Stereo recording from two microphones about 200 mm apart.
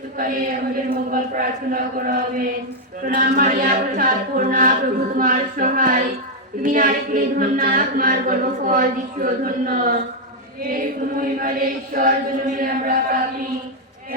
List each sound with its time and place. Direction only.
0.2 s a capella: 45° right (ahead or behind)
11.2 s a capella: 45° right (ahead or behind)